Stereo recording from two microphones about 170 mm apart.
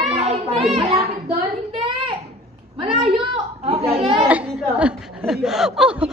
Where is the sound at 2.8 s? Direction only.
35° right (ahead or behind).